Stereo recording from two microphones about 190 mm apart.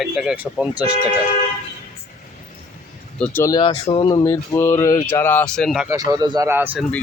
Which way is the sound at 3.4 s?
20° left (ahead or behind).